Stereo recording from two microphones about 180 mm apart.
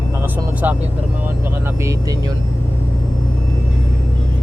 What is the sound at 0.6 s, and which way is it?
Speech, 10° right (ahead or behind).